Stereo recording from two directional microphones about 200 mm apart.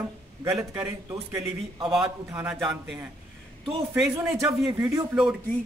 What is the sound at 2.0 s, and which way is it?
Speech, 5° right (ahead or behind).